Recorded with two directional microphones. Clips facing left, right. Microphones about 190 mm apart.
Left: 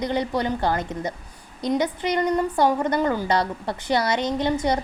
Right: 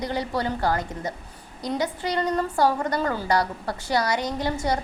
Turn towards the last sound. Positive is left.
turn(degrees=20)  # may be behind; listen again after turning